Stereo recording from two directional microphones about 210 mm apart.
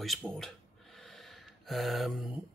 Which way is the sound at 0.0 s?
Centre (ahead or behind).